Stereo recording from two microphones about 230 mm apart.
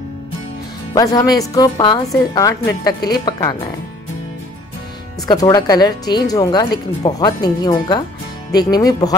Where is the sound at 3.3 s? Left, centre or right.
Centre.